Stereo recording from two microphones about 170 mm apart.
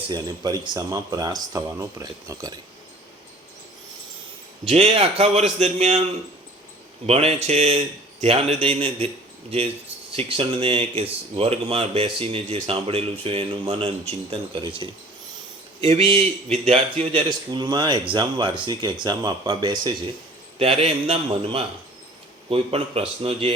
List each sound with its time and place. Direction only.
0.1 s speech: 20° right (ahead or behind)
4.6 s speech: 35° right (ahead or behind)
7.1 s speech: 35° right (ahead or behind)